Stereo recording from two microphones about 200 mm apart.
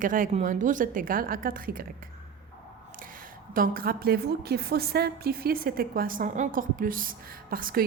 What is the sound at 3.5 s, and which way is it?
A woman's voice, 45° right (ahead or behind).